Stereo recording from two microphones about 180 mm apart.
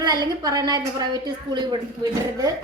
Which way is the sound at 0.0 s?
20° right (ahead or behind).